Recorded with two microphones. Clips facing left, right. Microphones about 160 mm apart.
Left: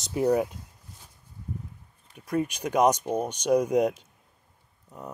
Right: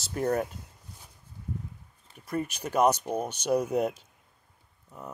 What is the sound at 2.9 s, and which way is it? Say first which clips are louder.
Speech: left 2 dB; 10° left (ahead or behind).